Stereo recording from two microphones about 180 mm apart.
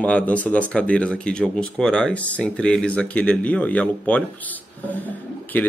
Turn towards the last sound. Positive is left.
turn(degrees=10)  # may be behind; listen again after turning